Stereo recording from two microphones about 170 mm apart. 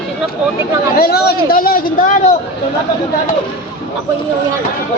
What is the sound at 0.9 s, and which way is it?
A man's voice, 65° left (ahead or behind).